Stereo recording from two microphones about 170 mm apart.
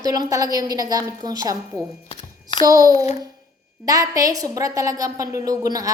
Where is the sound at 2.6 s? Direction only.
20° right (ahead or behind).